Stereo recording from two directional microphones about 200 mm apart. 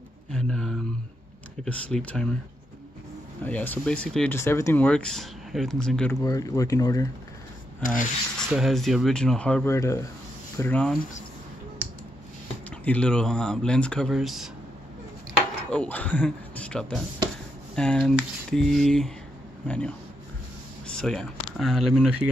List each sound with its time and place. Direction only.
0.3 s a sound: 5° left (ahead or behind)
1.6 s speech: 5° left (ahead or behind)
3.4 s speech: 10° left (ahead or behind)
6.2 s speech: 15° left (ahead or behind)
7.8 s sanding: 40° left (ahead or behind)
8.4 s speech: centre (ahead or behind)
12.6 s speech: 5° left (ahead or behind)
15.7 s speech: 5° left (ahead or behind)
20.8 s a sound: 5° left (ahead or behind)
21.5 s speech: centre (ahead or behind)